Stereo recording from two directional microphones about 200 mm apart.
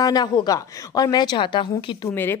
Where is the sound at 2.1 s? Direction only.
10° left (ahead or behind).